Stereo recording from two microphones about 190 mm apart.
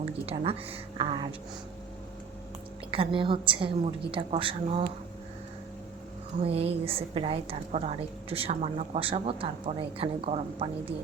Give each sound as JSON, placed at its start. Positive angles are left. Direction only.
{"t": 0.3, "sound": "a woman's voice", "side_deg": -30}
{"t": 2.9, "sound": "a woman's voice", "side_deg": -25}
{"t": 6.4, "sound": "a woman's voice", "side_deg": -30}